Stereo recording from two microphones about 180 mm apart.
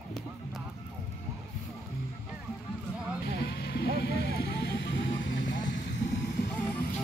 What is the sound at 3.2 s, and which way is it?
Music, 65° left (ahead or behind).